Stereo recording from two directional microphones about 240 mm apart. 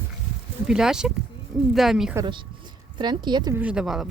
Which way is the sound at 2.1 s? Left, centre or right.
Centre.